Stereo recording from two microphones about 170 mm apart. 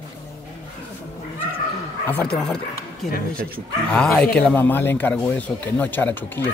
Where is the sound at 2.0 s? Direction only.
5° left (ahead or behind).